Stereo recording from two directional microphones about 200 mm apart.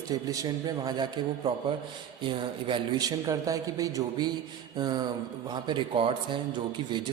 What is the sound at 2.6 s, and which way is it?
A man's voice, 20° right (ahead or behind).